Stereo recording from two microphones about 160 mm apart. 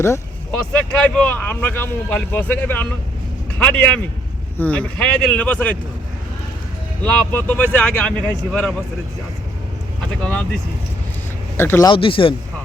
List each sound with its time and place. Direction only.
0.7 s speech: 10° left (ahead or behind)
7.0 s speech: 10° left (ahead or behind)
10.2 s speech: 5° left (ahead or behind)
11.9 s speech: 35° left (ahead or behind)